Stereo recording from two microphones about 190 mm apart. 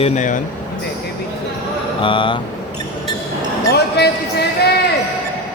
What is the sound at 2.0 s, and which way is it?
Mantra, 25° left (ahead or behind).